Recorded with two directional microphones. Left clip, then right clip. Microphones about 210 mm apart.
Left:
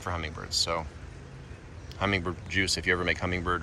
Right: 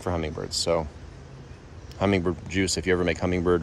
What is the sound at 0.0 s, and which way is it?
Speech, 30° right (ahead or behind).